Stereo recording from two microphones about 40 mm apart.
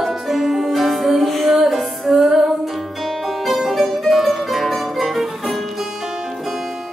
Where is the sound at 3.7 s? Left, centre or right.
Centre.